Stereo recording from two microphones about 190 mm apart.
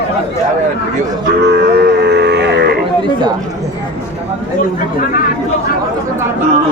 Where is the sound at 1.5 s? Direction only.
60° right (ahead or behind).